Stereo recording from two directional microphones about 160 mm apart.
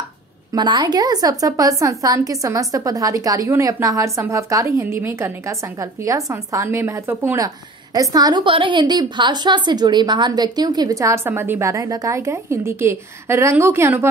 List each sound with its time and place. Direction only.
0.5 s a woman's voice: 30° right (ahead or behind)